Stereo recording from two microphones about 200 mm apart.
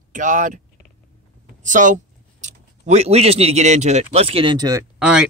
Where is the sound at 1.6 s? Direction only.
40° right (ahead or behind); by 4.8 s 20° right (ahead or behind).